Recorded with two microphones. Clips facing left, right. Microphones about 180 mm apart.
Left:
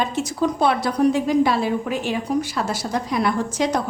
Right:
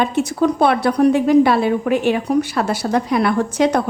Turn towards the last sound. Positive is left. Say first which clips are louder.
# right 5 dB
turn(degrees=-60)  # may be behind; listen again after turning